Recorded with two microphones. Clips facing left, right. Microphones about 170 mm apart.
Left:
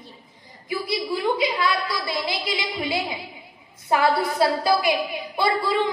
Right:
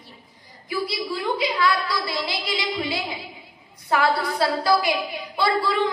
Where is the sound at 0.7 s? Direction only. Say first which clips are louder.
Left 1 dB; 20° left (ahead or behind).